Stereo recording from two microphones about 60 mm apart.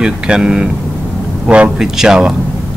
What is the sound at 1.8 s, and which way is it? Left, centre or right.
Speech, centre.